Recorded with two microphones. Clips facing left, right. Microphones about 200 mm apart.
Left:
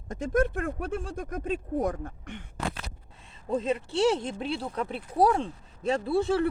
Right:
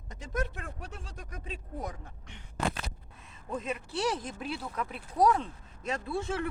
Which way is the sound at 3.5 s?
30° left (ahead or behind).